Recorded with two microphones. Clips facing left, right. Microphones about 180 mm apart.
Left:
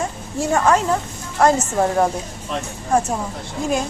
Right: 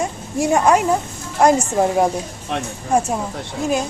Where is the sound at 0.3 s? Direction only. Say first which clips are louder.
Right 2 dB; 15° right (ahead or behind).